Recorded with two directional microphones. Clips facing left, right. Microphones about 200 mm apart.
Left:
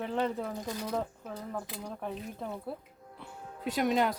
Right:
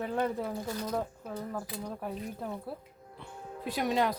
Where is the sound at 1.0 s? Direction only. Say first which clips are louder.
Right 1 dB; 5° right (ahead or behind).